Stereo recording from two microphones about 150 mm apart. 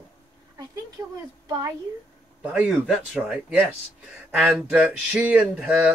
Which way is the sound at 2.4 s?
10° right (ahead or behind).